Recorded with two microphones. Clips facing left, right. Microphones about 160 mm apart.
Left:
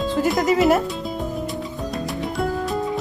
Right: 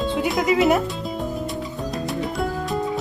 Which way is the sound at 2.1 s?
Centre (ahead or behind).